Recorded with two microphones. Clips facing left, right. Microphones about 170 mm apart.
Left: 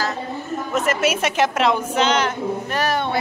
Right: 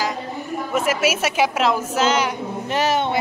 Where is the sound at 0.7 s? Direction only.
5° right (ahead or behind).